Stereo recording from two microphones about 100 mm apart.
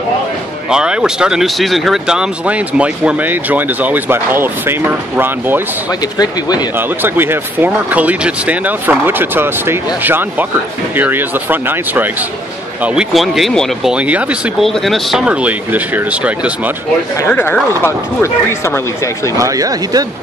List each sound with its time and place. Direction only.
0.7 s speech: 5° right (ahead or behind)
7.0 s speech: 20° right (ahead or behind)
13.1 s speech: centre (ahead or behind)
13.8 s speech: 15° right (ahead or behind)
14.6 s speech: centre (ahead or behind)
17.3 s speech: 20° left (ahead or behind)
19.3 s speech: 35° right (ahead or behind)